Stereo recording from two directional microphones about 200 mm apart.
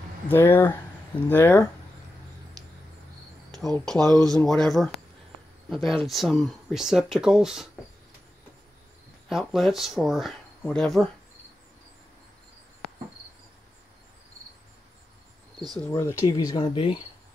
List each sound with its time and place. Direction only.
0.3 s speech: 10° left (ahead or behind)
3.7 s speech: 5° left (ahead or behind)
9.3 s speech: centre (ahead or behind)
15.8 s speech: 15° left (ahead or behind)